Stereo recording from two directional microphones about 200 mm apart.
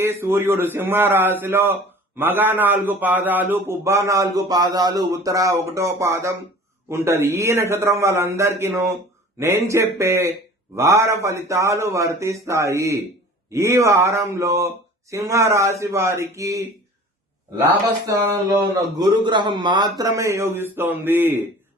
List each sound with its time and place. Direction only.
0.0 s a man's voice: 10° right (ahead or behind)
18.0 s a man's voice: 15° right (ahead or behind)